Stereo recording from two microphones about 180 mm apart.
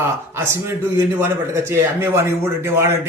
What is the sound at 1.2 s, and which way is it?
A man's voice, 15° right (ahead or behind).